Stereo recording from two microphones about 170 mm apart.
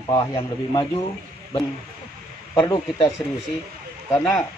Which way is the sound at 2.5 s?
15° left (ahead or behind).